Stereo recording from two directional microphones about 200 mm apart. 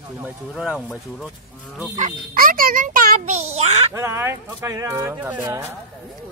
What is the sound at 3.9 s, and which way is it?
Speech, 15° right (ahead or behind).